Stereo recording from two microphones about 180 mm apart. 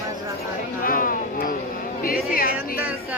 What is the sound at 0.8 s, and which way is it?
Speech, 50° left (ahead or behind).